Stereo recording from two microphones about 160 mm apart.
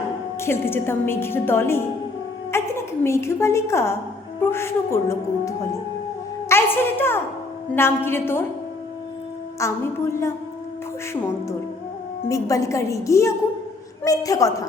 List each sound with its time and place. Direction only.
0.3 s a woman's voice: 15° left (ahead or behind)
9.6 s a woman's voice: 15° left (ahead or behind)
12.3 s a woman's voice: 20° left (ahead or behind)